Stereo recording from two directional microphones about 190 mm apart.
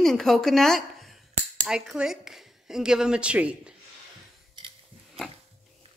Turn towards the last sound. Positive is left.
turn(degrees=-30)  # may be behind; listen again after turning